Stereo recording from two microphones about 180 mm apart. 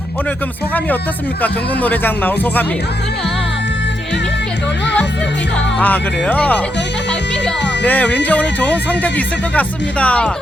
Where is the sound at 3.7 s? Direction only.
80° left.